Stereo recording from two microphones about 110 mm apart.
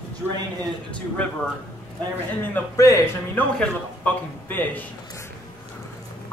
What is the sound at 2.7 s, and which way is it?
Speech, 30° left (ahead or behind).